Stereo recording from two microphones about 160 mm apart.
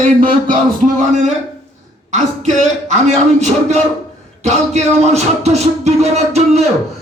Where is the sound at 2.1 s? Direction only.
45° right (ahead or behind).